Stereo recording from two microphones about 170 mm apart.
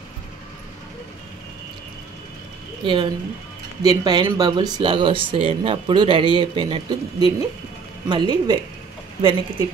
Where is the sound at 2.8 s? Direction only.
30° right (ahead or behind).